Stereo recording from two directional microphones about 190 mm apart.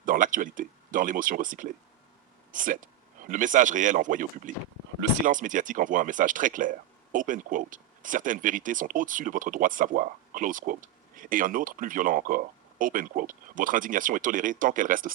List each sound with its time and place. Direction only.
0.0 s speech: 45° right (ahead or behind)